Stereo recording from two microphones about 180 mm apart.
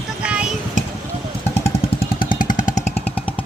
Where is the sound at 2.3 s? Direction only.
45° left (ahead or behind).